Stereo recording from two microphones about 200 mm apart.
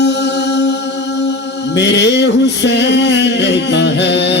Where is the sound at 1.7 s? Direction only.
60° left (ahead or behind).